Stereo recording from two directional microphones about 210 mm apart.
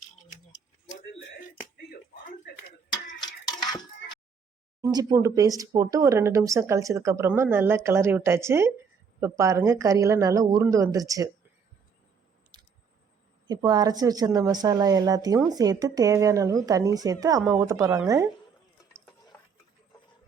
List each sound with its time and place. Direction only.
3.2 s a sound: 20° left (ahead or behind)
4.9 s speech: 20° right (ahead or behind)
13.5 s speech: 20° right (ahead or behind)